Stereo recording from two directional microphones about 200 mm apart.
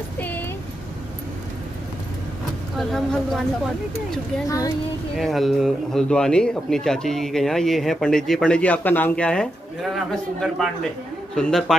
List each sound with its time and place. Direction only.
0.2 s a sound: 10° left (ahead or behind)
2.8 s speech: centre (ahead or behind)
4.5 s speech: 15° left (ahead or behind)
5.1 s speech: centre (ahead or behind)